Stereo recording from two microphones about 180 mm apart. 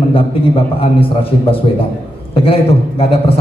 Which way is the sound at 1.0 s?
30° left (ahead or behind).